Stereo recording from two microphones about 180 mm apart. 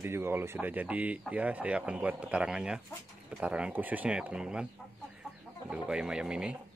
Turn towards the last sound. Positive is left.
turn(degrees=-5)  # may be behind; listen again after turning